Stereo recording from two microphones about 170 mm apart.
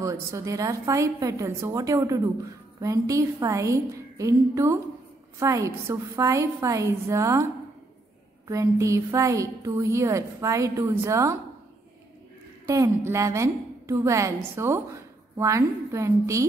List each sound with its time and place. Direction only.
0.0 s a woman's voice: 15° right (ahead or behind)
8.5 s a woman's voice: 20° right (ahead or behind)
12.6 s a woman's voice: 15° right (ahead or behind)